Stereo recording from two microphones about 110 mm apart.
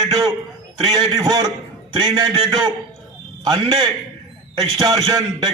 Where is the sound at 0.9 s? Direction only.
40° right (ahead or behind).